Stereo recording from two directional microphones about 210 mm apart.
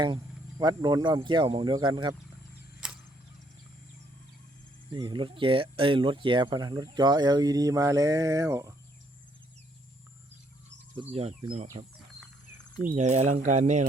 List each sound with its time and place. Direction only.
0.6 s speech: 20° right (ahead or behind)
4.9 s speech: 20° right (ahead or behind)
11.1 s speech: 25° right (ahead or behind)
12.9 s speech: 30° right (ahead or behind)